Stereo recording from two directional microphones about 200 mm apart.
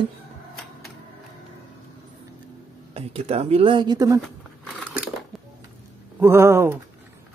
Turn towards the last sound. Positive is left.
turn(degrees=-15)  # may be behind; listen again after turning